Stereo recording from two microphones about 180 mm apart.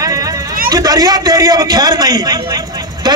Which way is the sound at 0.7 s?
20° right (ahead or behind).